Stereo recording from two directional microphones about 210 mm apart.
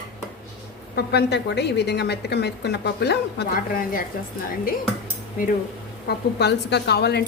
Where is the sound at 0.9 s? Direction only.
50° left (ahead or behind).